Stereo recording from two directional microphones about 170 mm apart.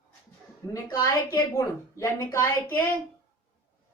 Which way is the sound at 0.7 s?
20° left (ahead or behind).